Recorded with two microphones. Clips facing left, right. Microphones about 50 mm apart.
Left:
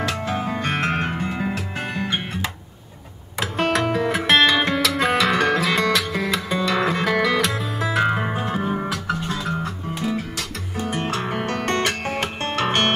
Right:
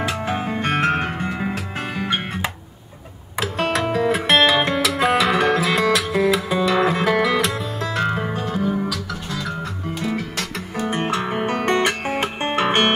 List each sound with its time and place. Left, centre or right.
0.0 s music: right
3.3 s music: centre
7.9 s music: centre; by 9.7 s left
10.8 s guitar: right
11.2 s music: centre